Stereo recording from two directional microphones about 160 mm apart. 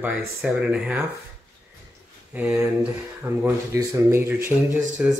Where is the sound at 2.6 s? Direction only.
15° right (ahead or behind).